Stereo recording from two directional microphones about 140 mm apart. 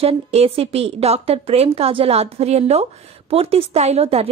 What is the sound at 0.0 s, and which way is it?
A woman's voice, 45° right (ahead or behind).